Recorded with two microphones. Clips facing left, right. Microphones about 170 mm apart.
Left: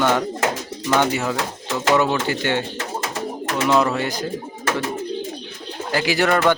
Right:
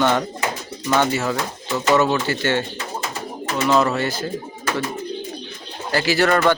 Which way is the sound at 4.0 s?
15° left (ahead or behind).